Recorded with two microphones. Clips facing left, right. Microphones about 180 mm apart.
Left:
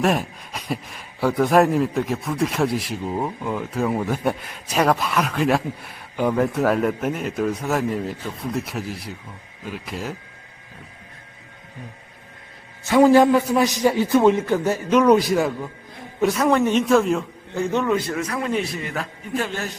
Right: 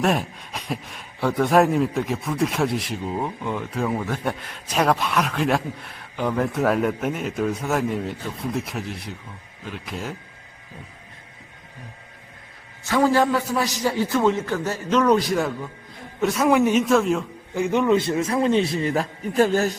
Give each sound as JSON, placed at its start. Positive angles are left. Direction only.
{"t": 0.0, "sound": "speech", "side_deg": 0}
{"t": 12.9, "sound": "a man's voice", "side_deg": 15}
{"t": 17.5, "sound": "a man's voice", "side_deg": -15}